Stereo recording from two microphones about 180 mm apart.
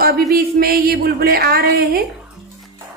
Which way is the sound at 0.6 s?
55° right (ahead or behind).